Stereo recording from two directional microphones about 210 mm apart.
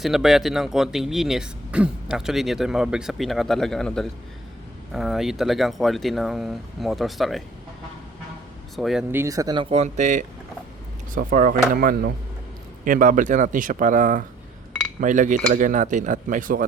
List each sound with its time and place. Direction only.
0.0 s speech: centre (ahead or behind)
8.7 s speech: centre (ahead or behind)
9.2 s speech: 15° right (ahead or behind); by 16.6 s 40° right (ahead or behind)